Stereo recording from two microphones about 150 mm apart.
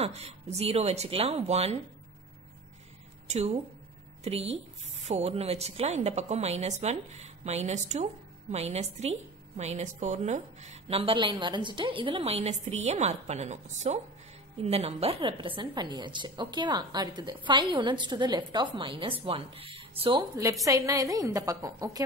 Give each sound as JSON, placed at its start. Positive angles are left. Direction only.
{"t": 0.0, "sound": "a woman's voice", "side_deg": -45}
{"t": 3.3, "sound": "a woman's voice", "side_deg": -45}
{"t": 20.6, "sound": "a woman's voice", "side_deg": -20}